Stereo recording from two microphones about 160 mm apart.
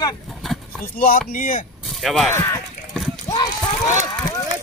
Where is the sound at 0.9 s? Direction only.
65° left (ahead or behind).